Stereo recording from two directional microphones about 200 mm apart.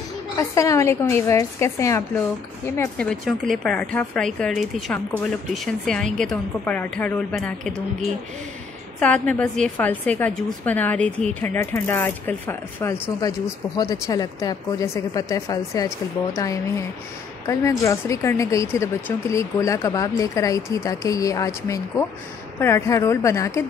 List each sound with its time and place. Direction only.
0.4 s a woman's voice: 15° left (ahead or behind)